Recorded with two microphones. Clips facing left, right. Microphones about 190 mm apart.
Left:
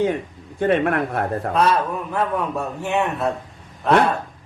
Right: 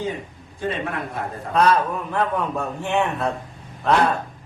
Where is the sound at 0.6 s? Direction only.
65° left (ahead or behind).